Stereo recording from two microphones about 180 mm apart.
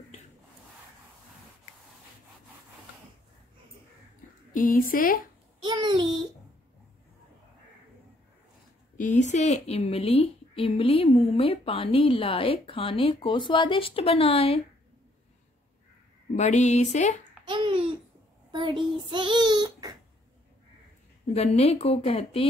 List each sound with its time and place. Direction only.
4.6 s a woman's voice: 50° left (ahead or behind)
5.6 s a sound: 25° right (ahead or behind)
8.9 s a woman's voice: 45° left (ahead or behind)
16.3 s a woman's voice: 40° left (ahead or behind)
17.5 s babbling: 25° right (ahead or behind)
18.5 s a child's voice: 25° right (ahead or behind)
21.3 s a woman's voice: 35° left (ahead or behind)